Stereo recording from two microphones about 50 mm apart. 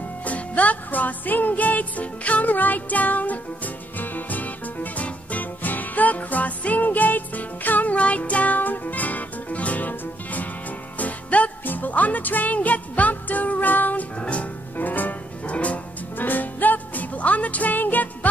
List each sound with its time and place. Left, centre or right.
0.2 s music: left
14.2 s music: left
14.8 s music: left